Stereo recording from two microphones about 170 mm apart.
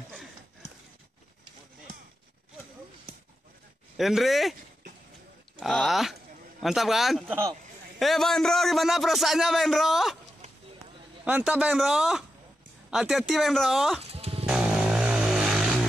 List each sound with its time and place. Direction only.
3.9 s speech: centre (ahead or behind)
5.6 s speech: centre (ahead or behind)
11.2 s speech: 10° right (ahead or behind)
14.1 s music: 35° right (ahead or behind)
14.5 s vehicle: 5° right (ahead or behind)